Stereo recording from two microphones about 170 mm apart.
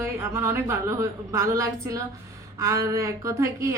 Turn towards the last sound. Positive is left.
turn(degrees=-15)  # may be behind; listen again after turning